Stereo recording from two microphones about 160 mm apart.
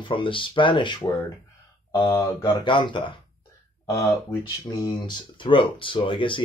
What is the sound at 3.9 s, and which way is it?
Speech, 20° left (ahead or behind).